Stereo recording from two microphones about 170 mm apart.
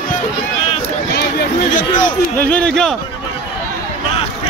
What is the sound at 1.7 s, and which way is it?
Speech, 50° left (ahead or behind).